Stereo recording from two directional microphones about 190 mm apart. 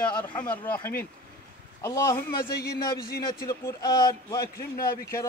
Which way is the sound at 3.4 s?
20° left (ahead or behind).